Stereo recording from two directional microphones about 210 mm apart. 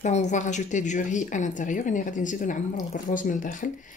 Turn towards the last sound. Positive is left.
turn(degrees=40)  # may be behind; listen again after turning